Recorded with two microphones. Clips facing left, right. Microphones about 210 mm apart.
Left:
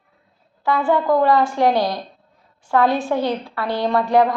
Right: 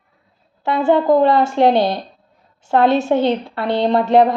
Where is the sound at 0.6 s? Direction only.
25° right (ahead or behind).